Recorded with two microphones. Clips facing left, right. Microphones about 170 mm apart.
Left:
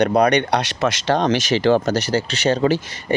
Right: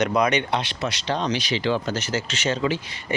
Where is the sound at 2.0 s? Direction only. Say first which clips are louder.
Left 6 dB; 35° left (ahead or behind).